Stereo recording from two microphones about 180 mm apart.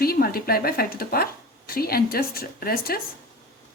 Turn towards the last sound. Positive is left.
turn(degrees=55)  # may be behind; listen again after turning